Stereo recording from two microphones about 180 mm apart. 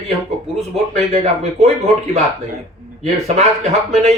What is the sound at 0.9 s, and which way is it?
Speech, 35° right (ahead or behind).